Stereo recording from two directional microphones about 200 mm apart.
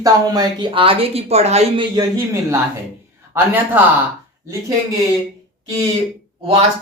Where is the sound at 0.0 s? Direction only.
20° right (ahead or behind).